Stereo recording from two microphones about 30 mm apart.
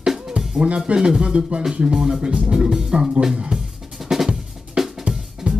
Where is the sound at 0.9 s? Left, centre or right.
Right.